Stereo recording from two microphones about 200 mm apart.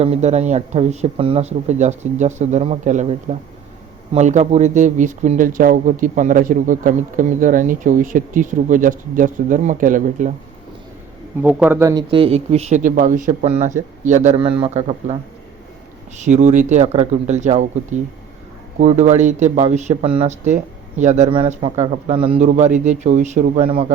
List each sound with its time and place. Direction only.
0.0 s speech: 35° right (ahead or behind)
11.4 s speech: 10° right (ahead or behind); by 15.1 s 35° right (ahead or behind)
16.2 s speech: 35° right (ahead or behind)